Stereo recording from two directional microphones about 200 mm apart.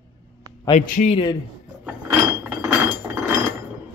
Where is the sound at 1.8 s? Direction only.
10° right (ahead or behind).